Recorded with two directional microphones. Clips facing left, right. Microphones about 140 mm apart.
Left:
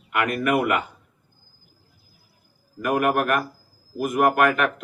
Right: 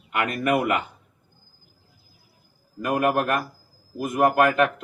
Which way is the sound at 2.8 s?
25° right (ahead or behind).